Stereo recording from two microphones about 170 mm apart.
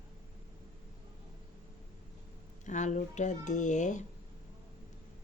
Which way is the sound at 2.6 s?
45° left (ahead or behind).